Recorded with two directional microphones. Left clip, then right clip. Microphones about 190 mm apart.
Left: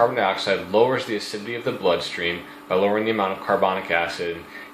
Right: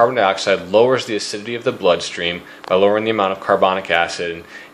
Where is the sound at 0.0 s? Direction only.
50° right (ahead or behind).